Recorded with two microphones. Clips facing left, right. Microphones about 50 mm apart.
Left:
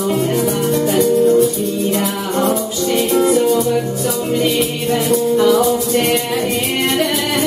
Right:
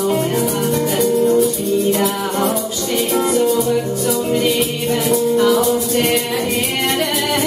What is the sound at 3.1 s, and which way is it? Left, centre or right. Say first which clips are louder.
Music: left 2 dB; centre.